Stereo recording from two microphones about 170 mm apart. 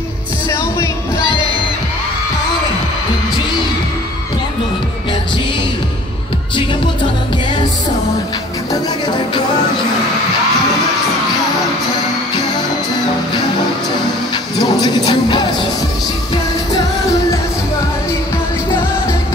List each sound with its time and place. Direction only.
14.6 s music: 25° left (ahead or behind)